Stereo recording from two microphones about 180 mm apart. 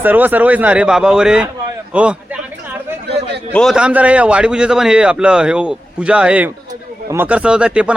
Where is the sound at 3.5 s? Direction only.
Centre (ahead or behind).